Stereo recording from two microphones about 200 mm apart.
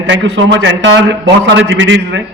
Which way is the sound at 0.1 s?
65° right (ahead or behind).